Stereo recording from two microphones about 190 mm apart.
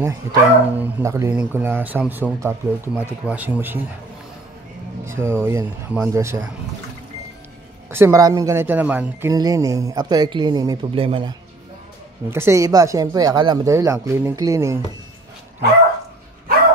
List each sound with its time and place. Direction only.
0.0 s speech: 15° right (ahead or behind)
5.0 s speech: 15° right (ahead or behind)
7.9 s speech: 15° right (ahead or behind)
12.3 s speech: 15° right (ahead or behind)